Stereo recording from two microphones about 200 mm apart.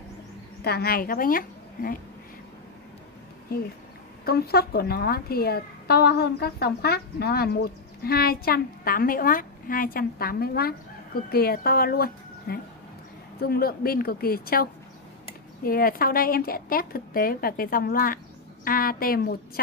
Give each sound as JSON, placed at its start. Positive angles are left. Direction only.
{"t": 0.6, "sound": "a woman's voice", "side_deg": 50}
{"t": 4.2, "sound": "a woman's voice", "side_deg": 50}